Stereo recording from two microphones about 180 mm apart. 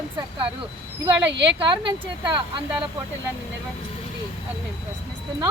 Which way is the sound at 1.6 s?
25° right (ahead or behind).